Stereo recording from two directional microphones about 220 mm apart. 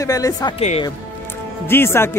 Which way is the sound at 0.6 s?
30° left (ahead or behind).